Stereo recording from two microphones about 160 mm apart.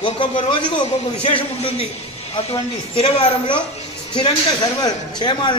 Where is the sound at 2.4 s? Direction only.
40° left (ahead or behind).